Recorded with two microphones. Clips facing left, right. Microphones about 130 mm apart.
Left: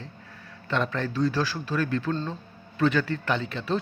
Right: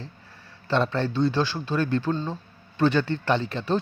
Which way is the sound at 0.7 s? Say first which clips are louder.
Right 4 dB; 30° right (ahead or behind).